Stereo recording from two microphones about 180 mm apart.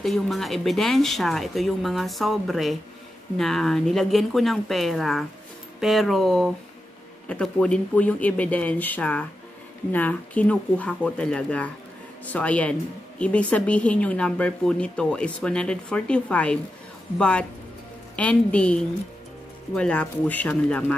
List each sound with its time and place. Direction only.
0.0 s speech: centre (ahead or behind)